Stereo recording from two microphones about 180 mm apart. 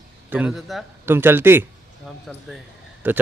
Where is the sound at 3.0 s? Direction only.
10° right (ahead or behind).